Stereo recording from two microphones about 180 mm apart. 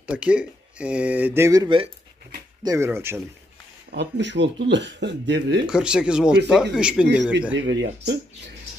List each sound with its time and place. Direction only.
0.0 s speech: 5° right (ahead or behind)
3.9 s speech: 75° right (ahead or behind)
5.7 s speech: 5° right (ahead or behind)
7.5 s speech: 90° right; by 8.5 s 70° right (ahead or behind)